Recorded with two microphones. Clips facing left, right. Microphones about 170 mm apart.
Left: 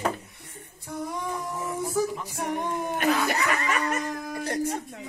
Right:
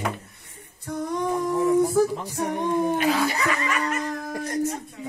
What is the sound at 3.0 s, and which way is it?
Dog, 55° left (ahead or behind).